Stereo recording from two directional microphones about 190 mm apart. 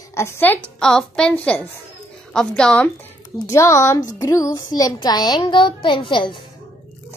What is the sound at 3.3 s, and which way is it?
A child's voice, 15° left (ahead or behind).